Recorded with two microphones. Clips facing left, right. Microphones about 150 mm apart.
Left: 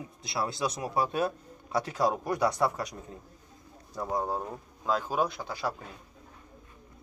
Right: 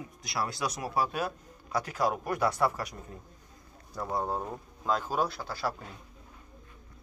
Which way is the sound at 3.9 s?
15° left (ahead or behind).